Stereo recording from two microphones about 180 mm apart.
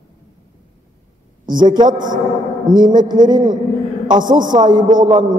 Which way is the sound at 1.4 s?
25° right (ahead or behind).